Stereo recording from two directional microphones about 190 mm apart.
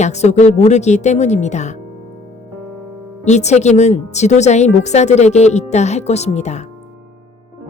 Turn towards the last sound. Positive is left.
turn(degrees=35)  # may be behind; listen again after turning